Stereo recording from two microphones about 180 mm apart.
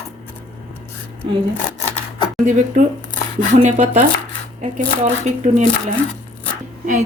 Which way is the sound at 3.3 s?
40° right (ahead or behind).